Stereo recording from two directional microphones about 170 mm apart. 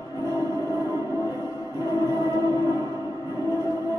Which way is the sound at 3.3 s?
20° right (ahead or behind).